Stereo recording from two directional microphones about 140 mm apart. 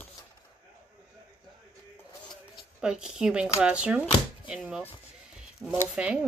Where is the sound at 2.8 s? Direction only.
5° right (ahead or behind).